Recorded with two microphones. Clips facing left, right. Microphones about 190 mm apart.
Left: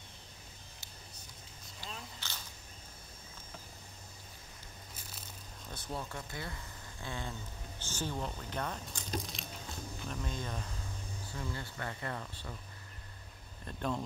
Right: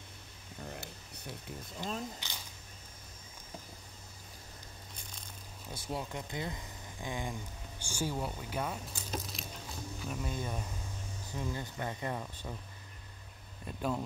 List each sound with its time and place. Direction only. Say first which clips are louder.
0.6 s a sound: right 12 dB; 70° right (ahead or behind)
1.8 s speech: right 9 dB; 45° right (ahead or behind)
2.1 s single-lens reflex camera: right 1 dB; 15° right (ahead or behind)
5.7 s speech: right 2 dB; 10° right (ahead or behind)
13.7 s speech: right 1 dB; 5° right (ahead or behind)